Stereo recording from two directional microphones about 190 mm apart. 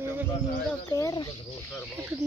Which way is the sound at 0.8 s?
20° left (ahead or behind).